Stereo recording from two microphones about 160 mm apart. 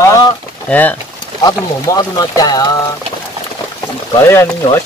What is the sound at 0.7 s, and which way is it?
Speech, 10° left (ahead or behind).